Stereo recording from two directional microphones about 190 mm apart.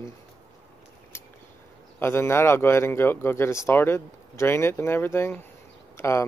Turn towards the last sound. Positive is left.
turn(degrees=15)  # may be behind; listen again after turning